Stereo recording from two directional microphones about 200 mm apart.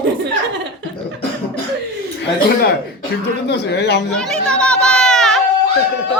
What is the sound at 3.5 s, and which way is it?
Speech, 60° left (ahead or behind).